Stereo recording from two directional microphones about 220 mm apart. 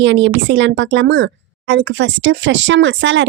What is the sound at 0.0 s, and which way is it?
A woman's voice, 55° right (ahead or behind).